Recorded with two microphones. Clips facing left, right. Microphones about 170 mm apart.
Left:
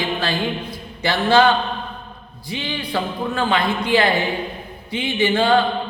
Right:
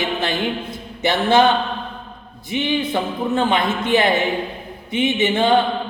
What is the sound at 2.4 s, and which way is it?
A man's voice, 20° right (ahead or behind).